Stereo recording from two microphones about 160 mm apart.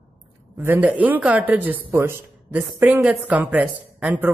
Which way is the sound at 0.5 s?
10° right (ahead or behind).